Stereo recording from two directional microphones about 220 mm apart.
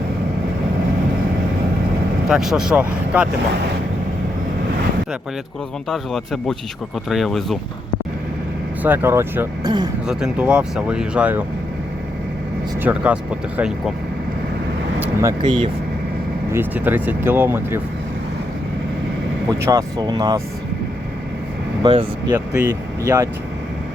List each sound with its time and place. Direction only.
2.3 s speech: centre (ahead or behind)
5.9 s speech: centre (ahead or behind)
8.8 s speech: 10° right (ahead or behind)
10.1 s speech: 5° right (ahead or behind)
12.8 s speech: 5° right (ahead or behind)
14.9 s speech: 10° right (ahead or behind)
16.5 s speech: 10° right (ahead or behind)
19.5 s speech: 15° right (ahead or behind)
21.8 s speech: 20° right (ahead or behind)